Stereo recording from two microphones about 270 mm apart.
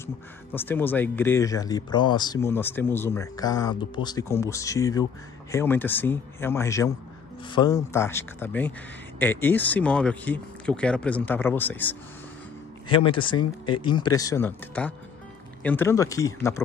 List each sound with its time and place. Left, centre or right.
0.0 s speech: centre
12.8 s speech: centre